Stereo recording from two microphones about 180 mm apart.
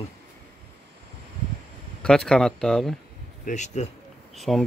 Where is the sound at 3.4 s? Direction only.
40° left (ahead or behind).